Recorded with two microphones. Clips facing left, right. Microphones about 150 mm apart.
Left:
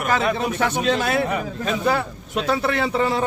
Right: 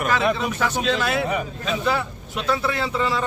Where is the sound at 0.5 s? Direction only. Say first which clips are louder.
Left 2 dB; 55° left (ahead or behind).